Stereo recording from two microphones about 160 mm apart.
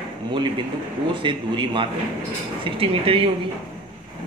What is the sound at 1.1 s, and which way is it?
Speech, 30° right (ahead or behind).